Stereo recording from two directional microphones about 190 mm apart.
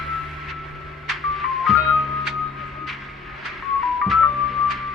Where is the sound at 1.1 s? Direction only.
Centre (ahead or behind).